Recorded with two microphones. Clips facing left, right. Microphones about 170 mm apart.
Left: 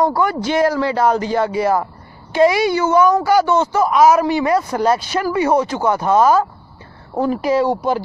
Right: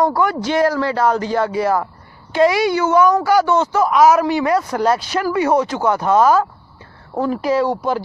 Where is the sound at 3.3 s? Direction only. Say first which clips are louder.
Even; 20° left (ahead or behind).